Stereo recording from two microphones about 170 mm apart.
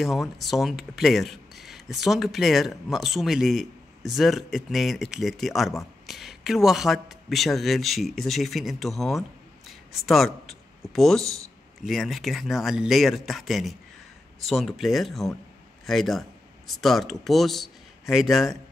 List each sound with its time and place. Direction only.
0.0 s speech: centre (ahead or behind)
9.7 s a sound: centre (ahead or behind)
10.9 s speech: centre (ahead or behind)